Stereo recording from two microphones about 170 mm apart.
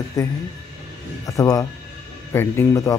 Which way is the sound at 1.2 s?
20° left (ahead or behind).